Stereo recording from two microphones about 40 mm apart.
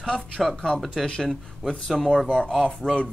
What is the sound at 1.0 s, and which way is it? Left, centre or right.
A man's voice, centre.